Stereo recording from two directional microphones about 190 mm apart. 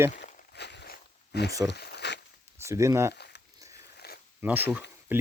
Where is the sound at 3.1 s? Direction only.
60° left (ahead or behind).